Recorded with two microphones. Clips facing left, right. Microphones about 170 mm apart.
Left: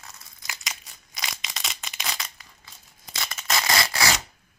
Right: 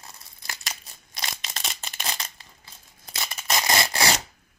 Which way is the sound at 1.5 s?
30° right (ahead or behind).